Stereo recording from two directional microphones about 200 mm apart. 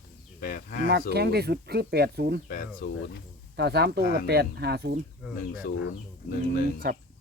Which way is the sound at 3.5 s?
55° right (ahead or behind).